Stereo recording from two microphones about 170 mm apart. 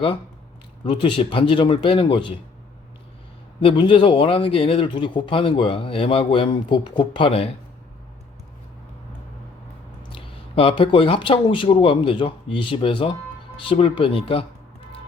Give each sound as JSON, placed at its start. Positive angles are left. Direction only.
{"t": 0.9, "sound": "speech", "side_deg": 30}
{"t": 3.6, "sound": "speech", "side_deg": 30}
{"t": 10.1, "sound": "speech", "side_deg": 35}